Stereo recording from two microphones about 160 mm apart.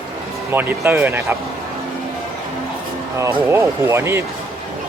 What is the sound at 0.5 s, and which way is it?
Speech, 10° right (ahead or behind).